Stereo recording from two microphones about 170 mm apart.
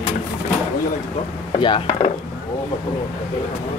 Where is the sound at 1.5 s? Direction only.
30° left (ahead or behind).